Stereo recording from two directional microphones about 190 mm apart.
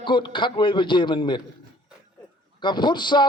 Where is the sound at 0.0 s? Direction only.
25° left (ahead or behind).